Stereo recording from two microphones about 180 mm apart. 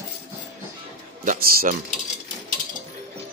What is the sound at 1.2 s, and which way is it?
Speech, 50° right (ahead or behind).